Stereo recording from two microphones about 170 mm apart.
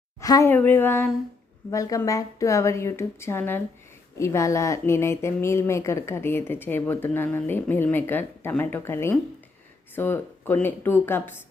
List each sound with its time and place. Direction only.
0.2 s speech: 20° left (ahead or behind)